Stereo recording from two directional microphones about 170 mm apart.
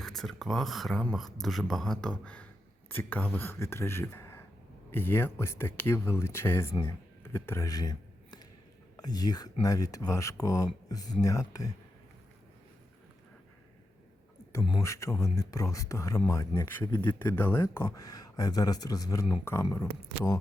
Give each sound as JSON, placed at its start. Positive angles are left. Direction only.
{"t": 0.2, "sound": "speech", "side_deg": 0}
{"t": 6.8, "sound": "a sound", "side_deg": 15}
{"t": 9.0, "sound": "speech", "side_deg": 25}
{"t": 14.6, "sound": "speech", "side_deg": 20}